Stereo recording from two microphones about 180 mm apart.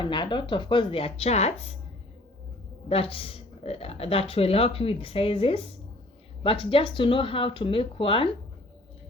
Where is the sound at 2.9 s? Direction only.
30° left (ahead or behind).